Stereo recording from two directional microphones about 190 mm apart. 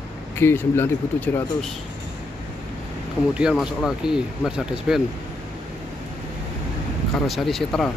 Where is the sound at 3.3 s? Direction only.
5° right (ahead or behind).